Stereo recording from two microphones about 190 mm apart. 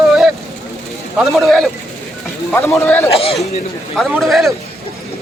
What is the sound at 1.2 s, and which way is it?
Speech, centre (ahead or behind).